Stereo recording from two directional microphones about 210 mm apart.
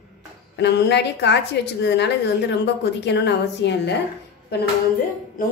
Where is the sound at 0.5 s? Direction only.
55° left (ahead or behind).